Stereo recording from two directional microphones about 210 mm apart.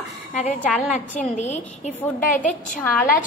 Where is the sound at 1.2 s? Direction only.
35° left (ahead or behind).